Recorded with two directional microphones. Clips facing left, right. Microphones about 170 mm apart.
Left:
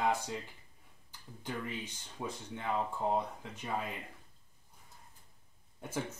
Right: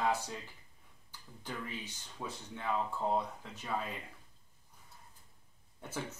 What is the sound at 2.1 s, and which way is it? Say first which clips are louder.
Speech: left 3 dB; 15° left (ahead or behind).